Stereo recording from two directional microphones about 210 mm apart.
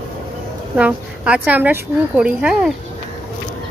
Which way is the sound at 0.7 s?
5° right (ahead or behind).